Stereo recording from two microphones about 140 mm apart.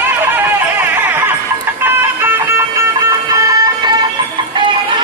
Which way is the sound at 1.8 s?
15° right (ahead or behind).